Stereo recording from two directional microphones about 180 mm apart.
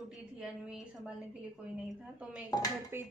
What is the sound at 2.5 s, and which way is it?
Dishes, 20° left (ahead or behind).